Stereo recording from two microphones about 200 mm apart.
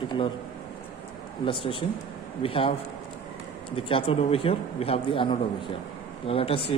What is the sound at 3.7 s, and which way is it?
Speech, 25° left (ahead or behind).